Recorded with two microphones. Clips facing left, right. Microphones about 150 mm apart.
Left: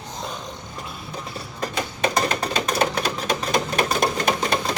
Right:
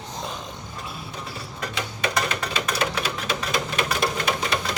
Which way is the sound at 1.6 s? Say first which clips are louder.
Left 4 dB; 40° left (ahead or behind).